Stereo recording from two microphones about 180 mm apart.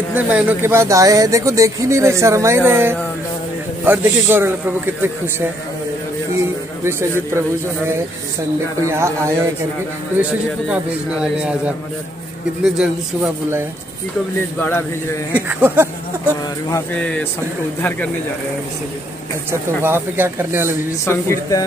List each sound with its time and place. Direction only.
0.1 s speech: 10° right (ahead or behind)
6.8 s speech: 15° right (ahead or behind)
8.8 s speech: 15° right (ahead or behind)
10.7 s a man's voice: 5° right (ahead or behind)
12.6 s a man's voice: 5° right (ahead or behind)
14.6 s speech: 15° left (ahead or behind)
15.3 s speech: 10° right (ahead or behind)
16.7 s speech: 10° left (ahead or behind)
19.8 s speech: 10° right (ahead or behind)
21.0 s speech: 15° left (ahead or behind)